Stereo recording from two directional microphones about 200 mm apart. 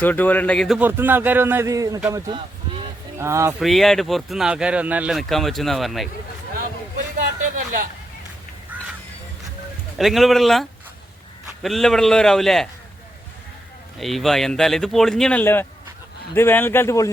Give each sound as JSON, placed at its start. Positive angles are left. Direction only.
{"t": 0.0, "sound": "speech", "side_deg": 10}
{"t": 3.6, "sound": "speech", "side_deg": 0}
{"t": 7.5, "sound": "a sound", "side_deg": -40}
{"t": 8.7, "sound": "crow", "side_deg": -10}
{"t": 10.0, "sound": "speech", "side_deg": 0}
{"t": 14.0, "sound": "speech", "side_deg": 0}